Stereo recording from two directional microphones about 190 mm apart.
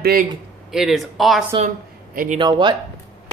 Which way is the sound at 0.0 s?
50° right (ahead or behind).